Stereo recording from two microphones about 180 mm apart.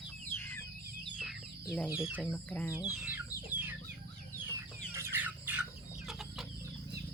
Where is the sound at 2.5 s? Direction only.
10° left (ahead or behind).